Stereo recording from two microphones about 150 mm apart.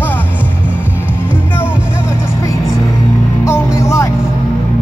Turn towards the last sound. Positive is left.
turn(degrees=20)  # may be behind; listen again after turning